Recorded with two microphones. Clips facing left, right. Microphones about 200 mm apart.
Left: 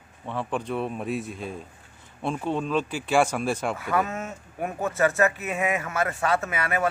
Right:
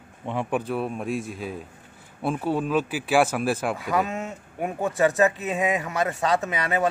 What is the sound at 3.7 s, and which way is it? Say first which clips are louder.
Speech: right 1 dB; 15° right (ahead or behind).